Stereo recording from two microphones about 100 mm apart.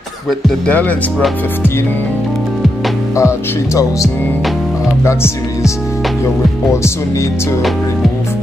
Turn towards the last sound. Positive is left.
turn(degrees=30)  # may be behind; listen again after turning